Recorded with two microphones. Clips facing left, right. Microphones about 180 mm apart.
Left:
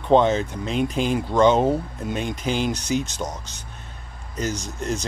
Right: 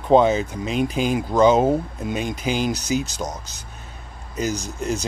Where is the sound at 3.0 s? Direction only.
35° right (ahead or behind).